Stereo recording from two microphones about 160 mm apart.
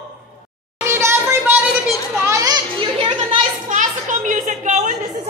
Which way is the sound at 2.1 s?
20° right (ahead or behind).